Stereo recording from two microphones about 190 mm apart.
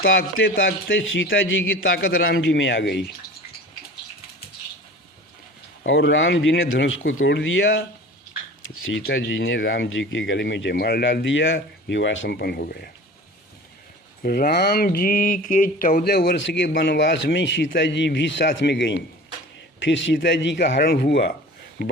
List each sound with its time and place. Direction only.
0.0 s a man's voice: 90° left
2.2 s speech: 70° left (ahead or behind)
5.8 s speech: 80° left; by 7.9 s 65° left (ahead or behind)
9.1 s speech: 90° left; by 12.9 s 55° left (ahead or behind)
14.2 s speech: 55° left (ahead or behind)
19.8 s speech: 75° left (ahead or behind)